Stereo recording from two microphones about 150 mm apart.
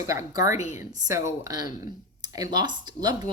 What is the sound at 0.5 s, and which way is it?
Speech, 50° left (ahead or behind).